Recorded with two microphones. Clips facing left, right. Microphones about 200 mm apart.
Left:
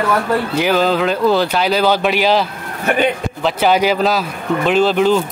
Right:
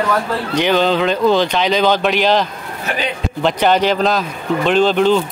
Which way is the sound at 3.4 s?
5° left (ahead or behind).